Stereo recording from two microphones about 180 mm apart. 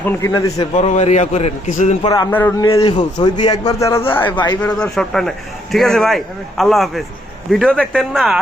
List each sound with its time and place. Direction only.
0.0 s a man's voice: 15° left (ahead or behind)
0.8 s a man's voice: 40° left (ahead or behind)
2.0 s a man's voice: 20° left (ahead or behind)
2.3 s a man's voice: 10° left (ahead or behind)
2.8 s a man's voice: 25° left (ahead or behind); by 8.4 s centre (ahead or behind)